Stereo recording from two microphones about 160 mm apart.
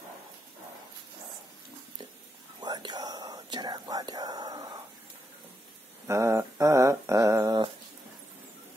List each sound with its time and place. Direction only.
2.6 s whispering: 25° right (ahead or behind)
6.0 s dog: 15° right (ahead or behind)